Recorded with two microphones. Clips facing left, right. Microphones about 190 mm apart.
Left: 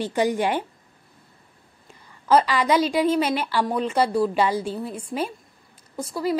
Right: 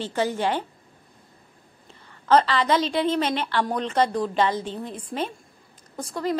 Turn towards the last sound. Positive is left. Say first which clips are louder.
# left 2 dB
turn(degrees=5)  # may be behind; listen again after turning